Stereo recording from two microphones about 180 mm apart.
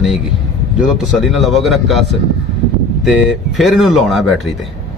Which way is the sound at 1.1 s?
Centre (ahead or behind).